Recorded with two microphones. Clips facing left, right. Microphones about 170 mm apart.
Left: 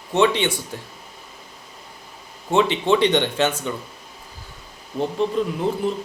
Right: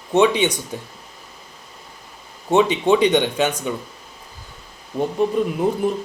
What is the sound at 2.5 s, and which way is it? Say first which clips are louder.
Speech: right 2 dB; 15° right (ahead or behind).